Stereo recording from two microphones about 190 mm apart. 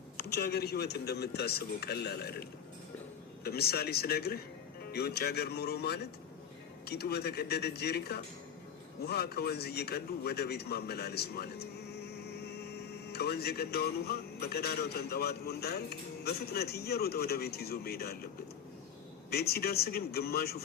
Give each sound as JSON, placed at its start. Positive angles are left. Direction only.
{"t": 0.2, "sound": "a man's voice", "side_deg": 60}
{"t": 19.3, "sound": "a man's voice", "side_deg": 55}